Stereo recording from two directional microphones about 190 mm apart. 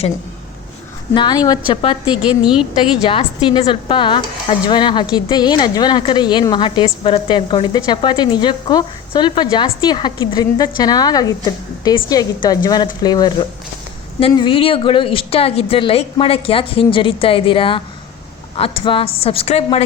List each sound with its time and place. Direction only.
1.1 s a woman's voice: 25° left (ahead or behind)
2.4 s a woman's voice: 5° right (ahead or behind)
3.1 s a woman's voice: 25° left (ahead or behind)